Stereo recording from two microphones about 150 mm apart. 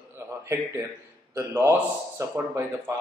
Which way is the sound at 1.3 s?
15° right (ahead or behind).